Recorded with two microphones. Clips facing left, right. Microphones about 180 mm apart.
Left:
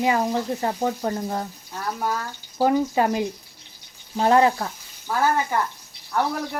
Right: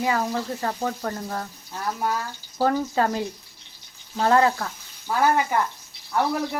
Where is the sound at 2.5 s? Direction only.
15° left (ahead or behind).